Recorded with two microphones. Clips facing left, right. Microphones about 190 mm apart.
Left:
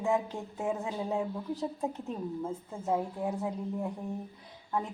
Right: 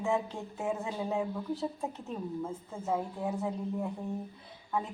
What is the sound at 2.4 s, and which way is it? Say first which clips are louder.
A woman's voice: left 2 dB; centre (ahead or behind).